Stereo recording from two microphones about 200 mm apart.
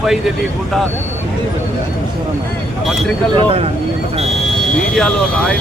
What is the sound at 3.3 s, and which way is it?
Speech, 30° right (ahead or behind).